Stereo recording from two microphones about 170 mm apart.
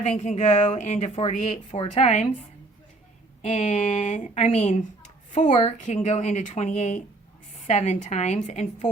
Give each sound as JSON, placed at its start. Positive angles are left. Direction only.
{"t": 0.0, "sound": "speech", "side_deg": 45}
{"t": 3.4, "sound": "speech", "side_deg": 45}